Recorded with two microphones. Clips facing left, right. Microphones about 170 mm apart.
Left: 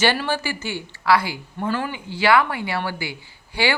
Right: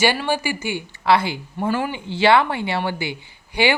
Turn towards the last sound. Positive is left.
turn(degrees=-20)  # may be behind; listen again after turning